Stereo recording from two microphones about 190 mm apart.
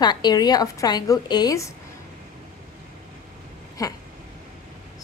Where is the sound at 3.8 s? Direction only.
20° left (ahead or behind).